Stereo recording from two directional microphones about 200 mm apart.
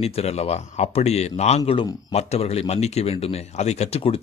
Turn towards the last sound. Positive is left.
turn(degrees=30)  # may be behind; listen again after turning